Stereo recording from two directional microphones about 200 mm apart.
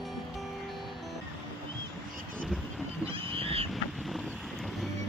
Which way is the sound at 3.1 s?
25° right (ahead or behind).